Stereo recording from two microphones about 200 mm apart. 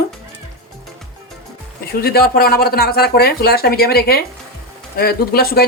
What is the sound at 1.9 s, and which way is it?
Speech, 50° left (ahead or behind).